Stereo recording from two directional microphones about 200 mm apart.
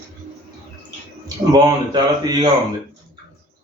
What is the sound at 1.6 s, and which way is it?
Speech, 20° right (ahead or behind).